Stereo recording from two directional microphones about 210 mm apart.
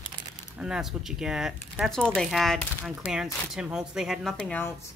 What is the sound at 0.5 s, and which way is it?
Speech, 5° right (ahead or behind).